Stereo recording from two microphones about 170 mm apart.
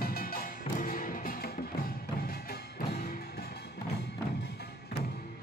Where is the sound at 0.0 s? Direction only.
60° left (ahead or behind).